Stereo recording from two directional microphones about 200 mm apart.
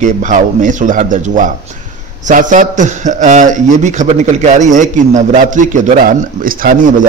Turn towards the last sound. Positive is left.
turn(degrees=-45)  # may be behind; listen again after turning